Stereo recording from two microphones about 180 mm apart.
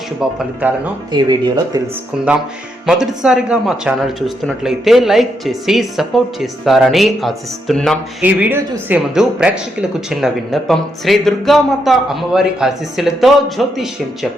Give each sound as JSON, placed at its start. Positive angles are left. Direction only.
{"t": 0.6, "sound": "speech", "side_deg": -10}
{"t": 1.1, "sound": "speech", "side_deg": -25}
{"t": 2.1, "sound": "speech", "side_deg": -5}
{"t": 8.2, "sound": "speech", "side_deg": -10}